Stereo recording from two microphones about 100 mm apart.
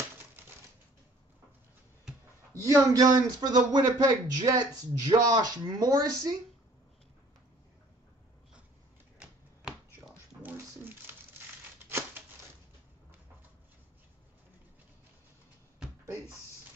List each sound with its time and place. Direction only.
2.5 s a man's voice: 35° right (ahead or behind)
9.2 s chopping: 10° right (ahead or behind)
10.4 s a sound: 20° right (ahead or behind)